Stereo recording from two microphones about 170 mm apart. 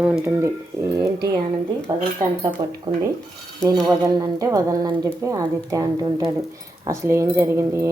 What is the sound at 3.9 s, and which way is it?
Speech, 20° right (ahead or behind).